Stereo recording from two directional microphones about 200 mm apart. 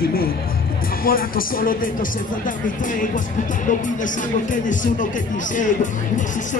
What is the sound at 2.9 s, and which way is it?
Speech, 40° left (ahead or behind).